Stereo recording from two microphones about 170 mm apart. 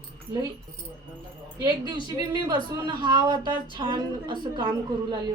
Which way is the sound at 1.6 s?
25° right (ahead or behind).